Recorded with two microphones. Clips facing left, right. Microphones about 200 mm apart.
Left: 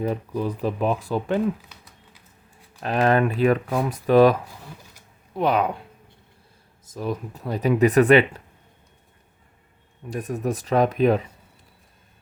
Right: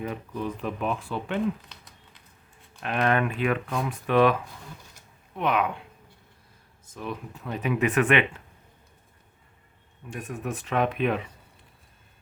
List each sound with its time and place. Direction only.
0.0 s speech: 35° left (ahead or behind)
1.7 s a sound: 5° left (ahead or behind)
2.8 s speech: 35° left (ahead or behind)
5.4 s speech: 35° left (ahead or behind)
6.8 s speech: 35° left (ahead or behind)
10.1 s speech: 40° left (ahead or behind)